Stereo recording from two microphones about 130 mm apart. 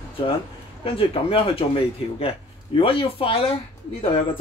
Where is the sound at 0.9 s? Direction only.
45° left (ahead or behind).